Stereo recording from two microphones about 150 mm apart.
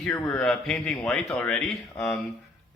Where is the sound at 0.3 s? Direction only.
5° left (ahead or behind).